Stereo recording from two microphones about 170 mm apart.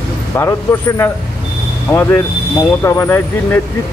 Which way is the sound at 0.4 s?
15° left (ahead or behind).